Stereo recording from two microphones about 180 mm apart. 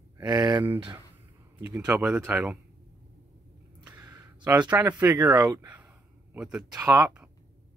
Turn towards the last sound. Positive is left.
turn(degrees=-10)  # may be behind; listen again after turning